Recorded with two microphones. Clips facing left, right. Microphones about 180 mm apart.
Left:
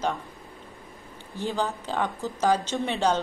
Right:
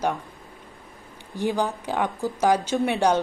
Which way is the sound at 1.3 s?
15° right (ahead or behind).